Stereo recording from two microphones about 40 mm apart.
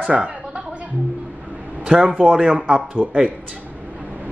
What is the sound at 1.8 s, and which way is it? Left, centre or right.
A man's voice, right.